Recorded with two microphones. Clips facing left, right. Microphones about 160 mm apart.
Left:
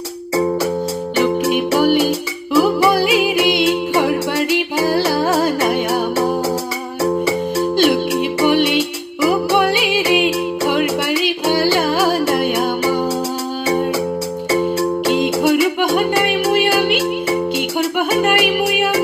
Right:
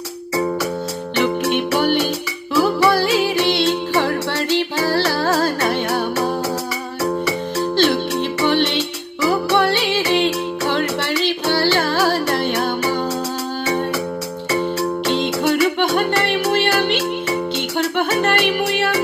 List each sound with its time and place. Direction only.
1.1 s music: 5° left (ahead or behind)
7.8 s music: 10° left (ahead or behind)
15.0 s music: 10° left (ahead or behind)